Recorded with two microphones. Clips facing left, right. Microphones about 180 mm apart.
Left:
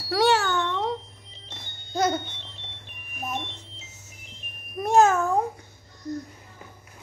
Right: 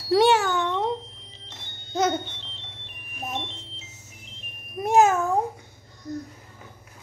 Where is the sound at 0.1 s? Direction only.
20° right (ahead or behind).